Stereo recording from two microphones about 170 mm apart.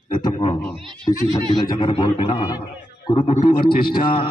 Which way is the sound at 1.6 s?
30° left (ahead or behind).